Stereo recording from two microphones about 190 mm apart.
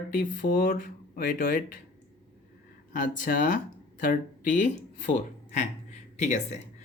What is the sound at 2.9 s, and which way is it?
Speech, 45° left (ahead or behind).